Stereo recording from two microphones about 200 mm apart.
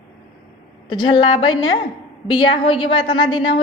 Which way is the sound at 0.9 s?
25° left (ahead or behind).